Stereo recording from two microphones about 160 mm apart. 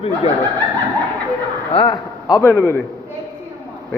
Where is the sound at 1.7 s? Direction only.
35° left (ahead or behind).